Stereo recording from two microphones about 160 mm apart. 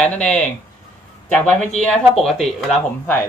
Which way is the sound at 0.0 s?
5° left (ahead or behind).